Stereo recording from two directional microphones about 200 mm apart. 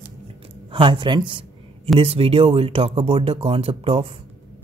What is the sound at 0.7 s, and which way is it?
Speech, 25° right (ahead or behind).